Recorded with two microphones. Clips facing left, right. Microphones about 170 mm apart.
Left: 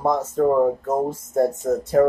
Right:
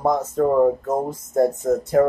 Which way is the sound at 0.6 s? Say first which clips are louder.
Right 2 dB; centre (ahead or behind).